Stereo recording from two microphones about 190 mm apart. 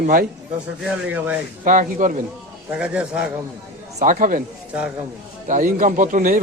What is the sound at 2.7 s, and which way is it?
Speech, 5° right (ahead or behind).